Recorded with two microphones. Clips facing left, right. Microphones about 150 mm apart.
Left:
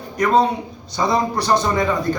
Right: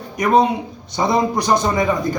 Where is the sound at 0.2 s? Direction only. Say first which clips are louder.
Right 1 dB; 15° right (ahead or behind).